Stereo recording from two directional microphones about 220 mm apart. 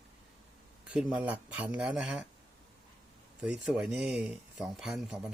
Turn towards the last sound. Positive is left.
turn(degrees=0)  # may be behind; listen again after turning